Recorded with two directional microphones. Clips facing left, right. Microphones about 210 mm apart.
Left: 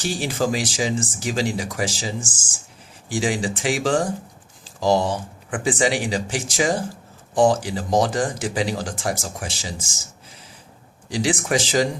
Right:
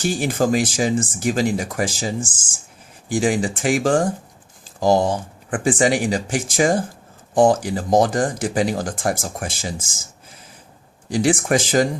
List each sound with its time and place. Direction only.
0.0 s speech: 50° right (ahead or behind)
11.1 s speech: 50° right (ahead or behind)